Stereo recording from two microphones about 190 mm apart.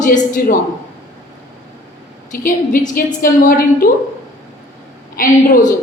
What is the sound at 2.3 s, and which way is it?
A woman's voice, 45° left (ahead or behind).